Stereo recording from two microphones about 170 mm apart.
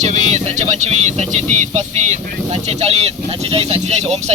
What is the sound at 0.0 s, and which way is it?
Speech, 45° right (ahead or behind).